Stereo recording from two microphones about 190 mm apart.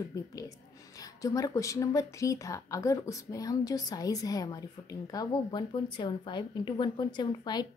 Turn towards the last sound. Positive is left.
turn(degrees=20)  # may be behind; listen again after turning